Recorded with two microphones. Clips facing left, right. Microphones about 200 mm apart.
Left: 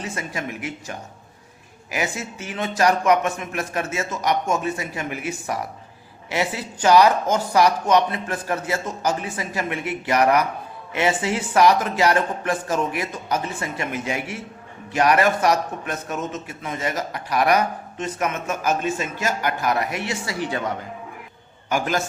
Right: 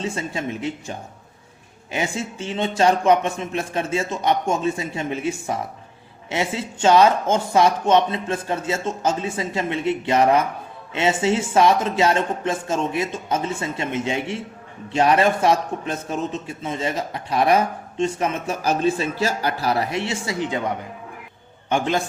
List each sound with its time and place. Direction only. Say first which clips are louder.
0.0 s speech: right 3 dB; 25° right (ahead or behind)
2.1 s speech: right 4 dB; 25° right (ahead or behind)